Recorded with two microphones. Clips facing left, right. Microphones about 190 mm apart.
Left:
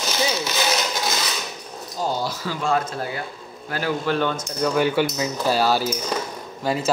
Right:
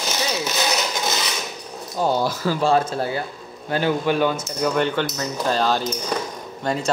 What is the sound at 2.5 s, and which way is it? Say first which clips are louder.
Speech: right 3 dB; 30° right (ahead or behind).